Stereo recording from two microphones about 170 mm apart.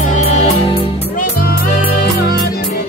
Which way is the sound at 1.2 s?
55° left (ahead or behind).